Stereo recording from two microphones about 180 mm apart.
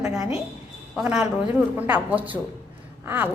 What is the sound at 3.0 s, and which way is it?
Gasp, 10° right (ahead or behind).